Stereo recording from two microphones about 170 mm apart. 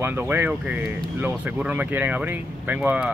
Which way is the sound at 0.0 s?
10° right (ahead or behind).